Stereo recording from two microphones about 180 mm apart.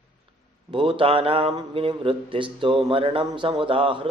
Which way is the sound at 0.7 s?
30° right (ahead or behind).